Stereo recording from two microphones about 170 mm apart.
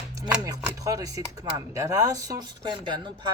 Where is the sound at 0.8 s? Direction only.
20° right (ahead or behind).